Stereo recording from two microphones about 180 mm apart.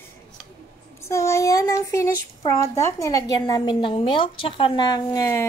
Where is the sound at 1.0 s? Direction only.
15° left (ahead or behind).